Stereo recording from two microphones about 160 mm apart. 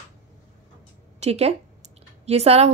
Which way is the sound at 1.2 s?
40° right (ahead or behind).